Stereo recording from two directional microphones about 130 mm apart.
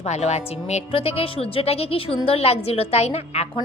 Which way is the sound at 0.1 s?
55° left (ahead or behind).